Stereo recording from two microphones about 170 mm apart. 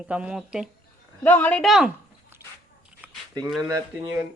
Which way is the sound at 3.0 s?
10° right (ahead or behind).